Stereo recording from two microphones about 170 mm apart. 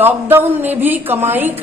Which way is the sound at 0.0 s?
10° right (ahead or behind).